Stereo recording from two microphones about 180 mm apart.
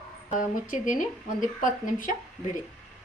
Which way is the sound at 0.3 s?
45° left (ahead or behind).